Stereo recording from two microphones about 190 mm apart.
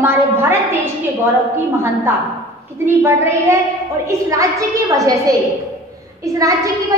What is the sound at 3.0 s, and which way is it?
A woman's voice, 15° right (ahead or behind).